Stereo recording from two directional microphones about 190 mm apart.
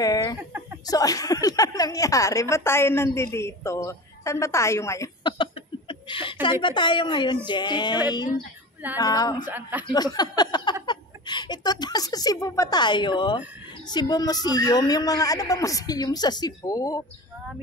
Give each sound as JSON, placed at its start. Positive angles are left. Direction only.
{"t": 0.0, "sound": "speech", "side_deg": 20}
{"t": 0.4, "sound": "speech", "side_deg": -10}
{"t": 0.8, "sound": "a woman's voice", "side_deg": 20}
{"t": 9.5, "sound": "a man's voice", "side_deg": -10}
{"t": 9.9, "sound": "a woman's voice", "side_deg": 20}